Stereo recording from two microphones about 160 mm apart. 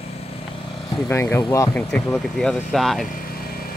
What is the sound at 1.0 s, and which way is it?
Speech, 15° left (ahead or behind).